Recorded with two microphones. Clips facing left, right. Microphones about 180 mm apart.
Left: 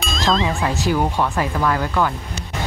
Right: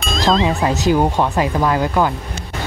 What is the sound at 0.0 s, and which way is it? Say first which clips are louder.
Speech: right 4 dB; centre (ahead or behind).